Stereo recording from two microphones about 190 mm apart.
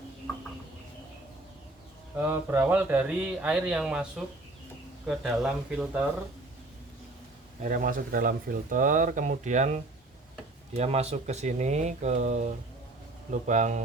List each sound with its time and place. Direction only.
2.1 s speech: 10° right (ahead or behind)
5.0 s speech: centre (ahead or behind)
7.6 s speech: 45° right (ahead or behind)
10.8 s speech: 35° right (ahead or behind)